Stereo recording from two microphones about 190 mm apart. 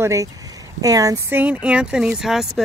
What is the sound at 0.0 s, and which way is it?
Speech, 15° right (ahead or behind).